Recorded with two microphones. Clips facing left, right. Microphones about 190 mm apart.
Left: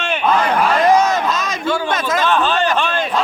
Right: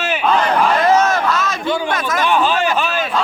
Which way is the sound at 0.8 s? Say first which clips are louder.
Even; 15° left (ahead or behind).